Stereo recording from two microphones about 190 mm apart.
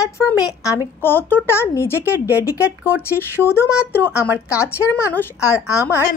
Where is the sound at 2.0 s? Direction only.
10° right (ahead or behind).